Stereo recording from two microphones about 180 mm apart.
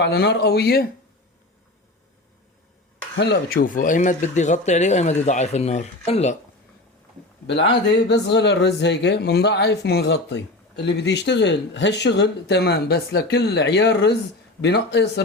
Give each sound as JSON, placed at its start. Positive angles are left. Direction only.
{"t": 0.0, "sound": "speech", "side_deg": 65}
{"t": 3.2, "sound": "speech", "side_deg": 65}
{"t": 7.4, "sound": "speech", "side_deg": 75}